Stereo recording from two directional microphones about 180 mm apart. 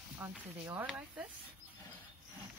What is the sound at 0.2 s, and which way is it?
Speech, 10° right (ahead or behind).